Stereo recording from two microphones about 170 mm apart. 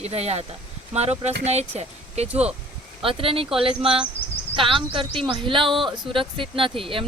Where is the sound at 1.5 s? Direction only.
40° right (ahead or behind).